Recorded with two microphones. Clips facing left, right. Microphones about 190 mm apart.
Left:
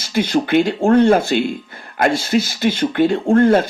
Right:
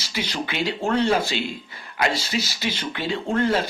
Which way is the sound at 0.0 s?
50° left (ahead or behind).